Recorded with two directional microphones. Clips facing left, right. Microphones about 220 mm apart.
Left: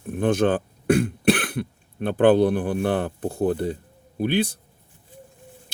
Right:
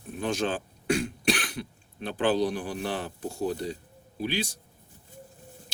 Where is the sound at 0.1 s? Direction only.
55° left (ahead or behind).